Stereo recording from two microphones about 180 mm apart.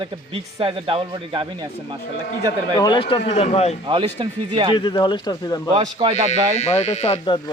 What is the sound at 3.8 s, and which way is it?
Speech, 30° right (ahead or behind).